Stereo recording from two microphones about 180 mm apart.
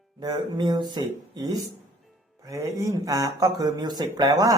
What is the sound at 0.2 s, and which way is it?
A man's voice, 25° right (ahead or behind).